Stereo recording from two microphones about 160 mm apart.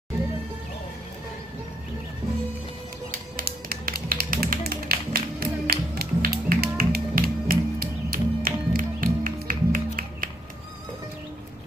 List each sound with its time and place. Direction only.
3.1 s music: 65° right (ahead or behind)